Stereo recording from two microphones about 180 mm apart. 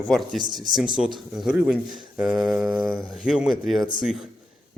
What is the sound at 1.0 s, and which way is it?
Speech, 5° right (ahead or behind).